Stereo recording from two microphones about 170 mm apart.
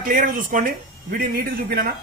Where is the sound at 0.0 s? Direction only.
55° right (ahead or behind).